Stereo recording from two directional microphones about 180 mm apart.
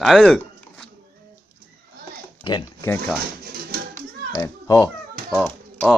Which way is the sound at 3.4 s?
55° right (ahead or behind).